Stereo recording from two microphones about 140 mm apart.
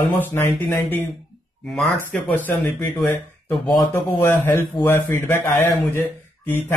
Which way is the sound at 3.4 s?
15° left (ahead or behind).